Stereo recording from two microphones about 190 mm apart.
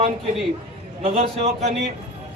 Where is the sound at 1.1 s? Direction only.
35° right (ahead or behind).